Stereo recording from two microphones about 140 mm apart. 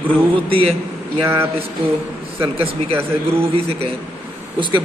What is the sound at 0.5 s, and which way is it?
Speech, 40° right (ahead or behind).